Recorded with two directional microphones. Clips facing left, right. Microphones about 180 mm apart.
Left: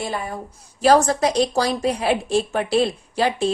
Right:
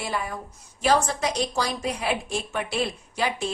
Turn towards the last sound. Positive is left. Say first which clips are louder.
# left 7 dB
turn(degrees=35)  # may be behind; listen again after turning